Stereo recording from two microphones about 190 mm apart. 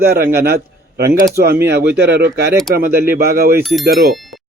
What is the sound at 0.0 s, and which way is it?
Speech, 55° right (ahead or behind).